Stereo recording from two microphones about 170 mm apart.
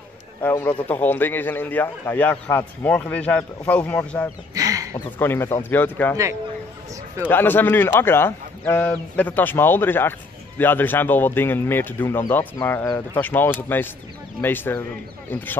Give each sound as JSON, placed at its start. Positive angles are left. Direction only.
{"t": 0.4, "sound": "a man's voice", "side_deg": 10}
{"t": 4.6, "sound": "a sound", "side_deg": -20}
{"t": 4.9, "sound": "a man's voice", "side_deg": 15}
{"t": 7.2, "sound": "a man's voice", "side_deg": 10}